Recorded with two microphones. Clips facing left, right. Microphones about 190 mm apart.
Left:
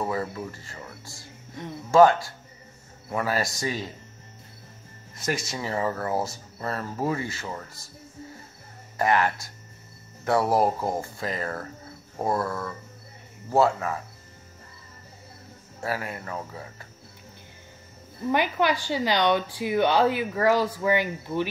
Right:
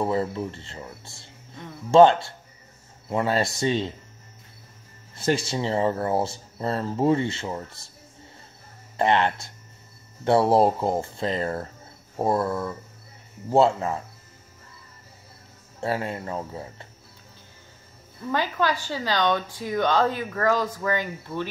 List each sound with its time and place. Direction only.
0.0 s speech: 25° right (ahead or behind)
5.1 s speech: 30° right (ahead or behind)
8.9 s speech: 25° right (ahead or behind)
15.8 s speech: 25° right (ahead or behind)
18.3 s a woman's voice: 15° left (ahead or behind)